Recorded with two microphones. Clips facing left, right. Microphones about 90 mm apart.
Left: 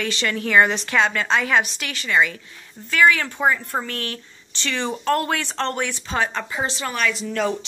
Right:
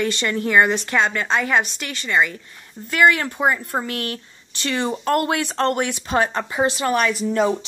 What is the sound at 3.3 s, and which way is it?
Speech, 5° right (ahead or behind).